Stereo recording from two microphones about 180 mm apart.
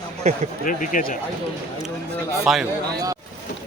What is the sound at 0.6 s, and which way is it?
Speech, 45° left (ahead or behind).